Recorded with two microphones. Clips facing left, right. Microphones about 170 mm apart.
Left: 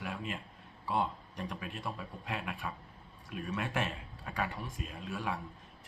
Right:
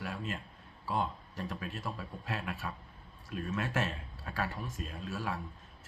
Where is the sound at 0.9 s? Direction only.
15° left (ahead or behind).